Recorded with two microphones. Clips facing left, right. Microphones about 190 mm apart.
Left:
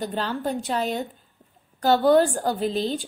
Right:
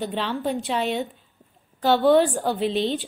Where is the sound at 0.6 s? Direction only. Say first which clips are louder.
Right 1 dB; 40° left (ahead or behind).